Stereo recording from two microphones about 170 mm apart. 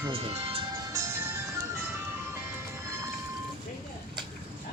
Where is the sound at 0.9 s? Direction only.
15° right (ahead or behind).